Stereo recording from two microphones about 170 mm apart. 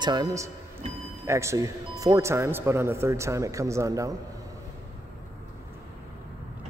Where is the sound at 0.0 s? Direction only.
25° right (ahead or behind).